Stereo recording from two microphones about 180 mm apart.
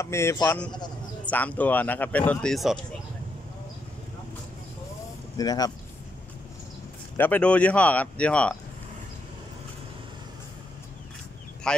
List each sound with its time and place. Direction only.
0.0 s speech: 15° left (ahead or behind)
5.4 s speech: 20° left (ahead or behind)
7.2 s speech: 10° left (ahead or behind)
11.7 s speech: 5° left (ahead or behind)